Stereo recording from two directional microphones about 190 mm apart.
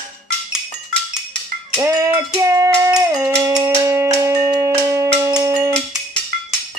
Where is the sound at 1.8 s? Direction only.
15° right (ahead or behind).